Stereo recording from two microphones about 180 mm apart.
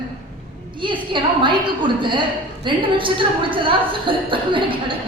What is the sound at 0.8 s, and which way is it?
A woman's voice, 25° right (ahead or behind).